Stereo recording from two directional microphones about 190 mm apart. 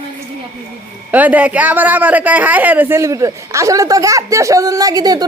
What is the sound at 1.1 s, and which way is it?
Speech, 10° right (ahead or behind).